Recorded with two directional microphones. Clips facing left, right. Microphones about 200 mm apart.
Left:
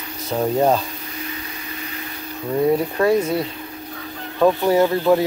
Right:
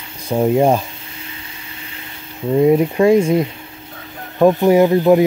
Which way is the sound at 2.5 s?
15° right (ahead or behind).